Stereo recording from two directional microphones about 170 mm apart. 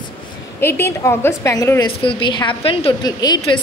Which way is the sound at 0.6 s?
15° left (ahead or behind).